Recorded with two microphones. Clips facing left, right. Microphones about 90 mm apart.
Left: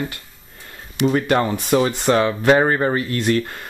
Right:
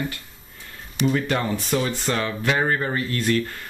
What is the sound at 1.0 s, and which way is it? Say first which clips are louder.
Speech: left 5 dB; 45° left (ahead or behind).